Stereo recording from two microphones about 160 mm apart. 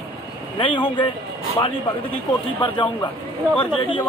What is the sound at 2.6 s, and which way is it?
Speech, 30° left (ahead or behind).